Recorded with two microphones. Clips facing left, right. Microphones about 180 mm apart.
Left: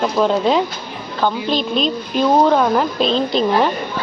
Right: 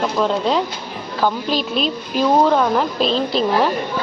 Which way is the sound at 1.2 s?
5° right (ahead or behind).